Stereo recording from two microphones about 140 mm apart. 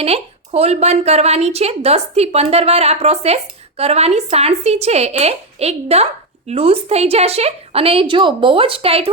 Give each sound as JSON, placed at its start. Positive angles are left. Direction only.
{"t": 0.0, "sound": "a woman's voice", "side_deg": -45}